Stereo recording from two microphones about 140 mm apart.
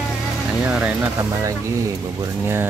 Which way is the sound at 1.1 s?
25° right (ahead or behind).